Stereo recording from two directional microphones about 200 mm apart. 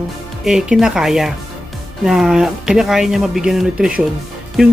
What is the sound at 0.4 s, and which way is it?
Speech, 5° right (ahead or behind).